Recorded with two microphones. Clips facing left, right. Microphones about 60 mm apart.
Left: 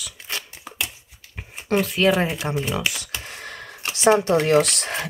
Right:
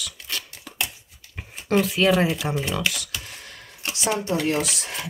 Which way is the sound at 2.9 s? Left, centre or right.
Left.